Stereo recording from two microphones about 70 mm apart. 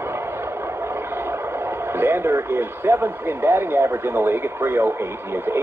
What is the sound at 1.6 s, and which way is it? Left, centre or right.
Speech, right.